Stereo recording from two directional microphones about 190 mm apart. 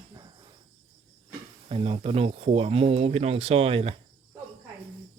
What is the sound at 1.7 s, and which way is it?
Speech, 30° right (ahead or behind).